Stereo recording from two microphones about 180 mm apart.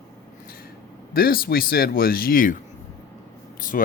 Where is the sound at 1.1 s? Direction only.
55° left (ahead or behind).